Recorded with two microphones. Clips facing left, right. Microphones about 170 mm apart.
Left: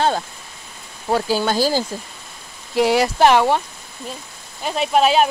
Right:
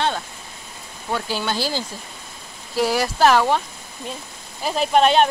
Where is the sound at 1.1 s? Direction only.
40° left (ahead or behind).